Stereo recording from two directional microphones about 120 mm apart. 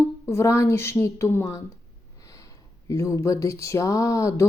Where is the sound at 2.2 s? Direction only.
25° left (ahead or behind).